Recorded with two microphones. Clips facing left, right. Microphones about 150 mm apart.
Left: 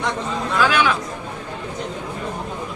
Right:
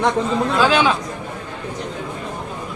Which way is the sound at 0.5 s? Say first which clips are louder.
Right 1 dB; 25° right (ahead or behind).